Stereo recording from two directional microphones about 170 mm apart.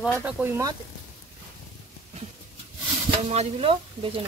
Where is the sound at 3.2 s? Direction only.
35° right (ahead or behind).